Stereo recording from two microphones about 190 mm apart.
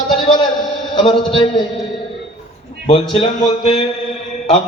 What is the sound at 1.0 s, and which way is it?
Speech, 25° left (ahead or behind).